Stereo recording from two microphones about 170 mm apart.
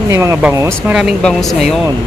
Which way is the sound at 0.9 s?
5° right (ahead or behind).